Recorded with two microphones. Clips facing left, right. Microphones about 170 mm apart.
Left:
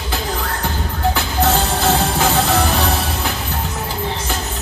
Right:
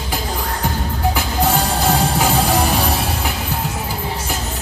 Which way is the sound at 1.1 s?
10° right (ahead or behind).